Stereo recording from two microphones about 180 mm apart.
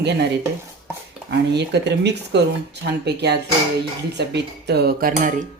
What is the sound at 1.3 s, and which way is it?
Speech, 70° right (ahead or behind).